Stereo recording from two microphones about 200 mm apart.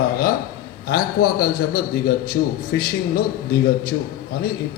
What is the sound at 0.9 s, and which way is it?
A man's voice, 50° left (ahead or behind).